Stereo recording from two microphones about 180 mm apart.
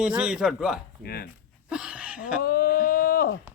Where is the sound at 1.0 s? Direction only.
60° left (ahead or behind).